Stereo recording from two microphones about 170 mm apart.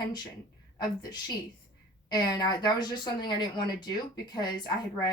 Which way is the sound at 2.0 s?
25° left (ahead or behind).